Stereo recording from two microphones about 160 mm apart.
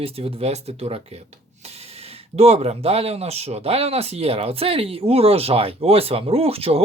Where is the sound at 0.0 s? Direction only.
40° right (ahead or behind).